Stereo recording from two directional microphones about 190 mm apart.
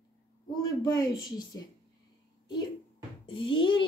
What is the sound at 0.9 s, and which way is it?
Speech, 20° left (ahead or behind).